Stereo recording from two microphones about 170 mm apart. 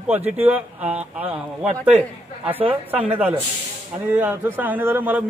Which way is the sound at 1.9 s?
35° right (ahead or behind).